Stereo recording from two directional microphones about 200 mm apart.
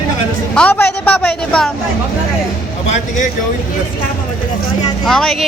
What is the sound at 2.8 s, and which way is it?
Speech, 35° left (ahead or behind).